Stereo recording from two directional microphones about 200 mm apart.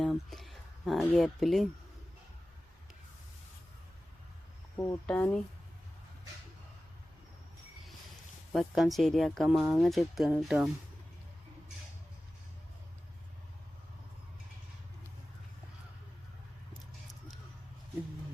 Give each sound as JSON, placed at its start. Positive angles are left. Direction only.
{"t": 0.0, "sound": "speech", "side_deg": 0}
{"t": 5.0, "sound": "speech", "side_deg": 5}
{"t": 8.5, "sound": "speech", "side_deg": 0}